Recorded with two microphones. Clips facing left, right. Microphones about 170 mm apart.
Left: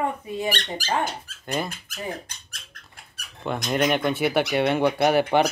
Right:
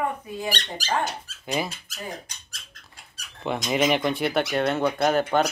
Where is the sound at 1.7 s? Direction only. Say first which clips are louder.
Left 3 dB; 55° left (ahead or behind).